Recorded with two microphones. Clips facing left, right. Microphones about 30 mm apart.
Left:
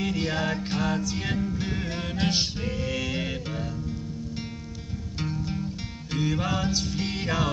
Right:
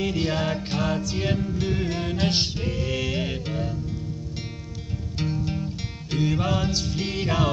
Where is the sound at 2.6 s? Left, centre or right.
Right.